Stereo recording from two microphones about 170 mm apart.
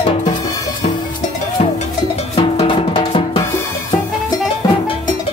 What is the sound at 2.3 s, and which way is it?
Drum, 30° left (ahead or behind).